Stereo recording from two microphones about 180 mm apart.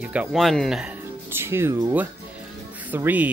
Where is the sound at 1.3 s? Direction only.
15° right (ahead or behind).